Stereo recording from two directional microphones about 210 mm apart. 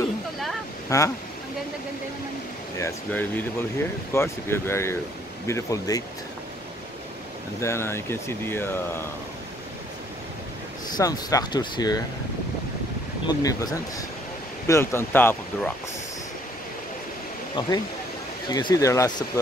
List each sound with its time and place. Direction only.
0.8 s speech: 15° left (ahead or behind)
2.8 s speech: 10° left (ahead or behind)
7.6 s speech: 10° left (ahead or behind)
11.0 s speech: 15° left (ahead or behind)
13.3 s speech: 15° left (ahead or behind)
17.6 s speech: 20° left (ahead or behind)